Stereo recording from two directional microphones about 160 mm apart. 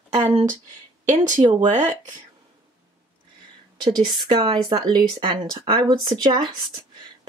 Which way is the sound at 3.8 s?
30° right (ahead or behind).